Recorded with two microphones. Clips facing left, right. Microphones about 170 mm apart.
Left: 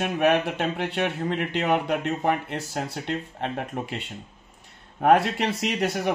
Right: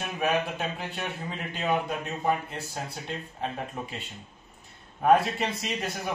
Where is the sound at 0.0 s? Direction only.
70° left (ahead or behind).